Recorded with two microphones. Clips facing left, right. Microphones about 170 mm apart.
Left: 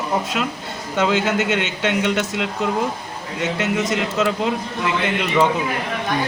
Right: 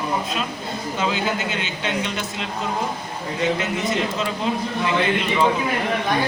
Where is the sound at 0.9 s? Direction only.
75° left (ahead or behind).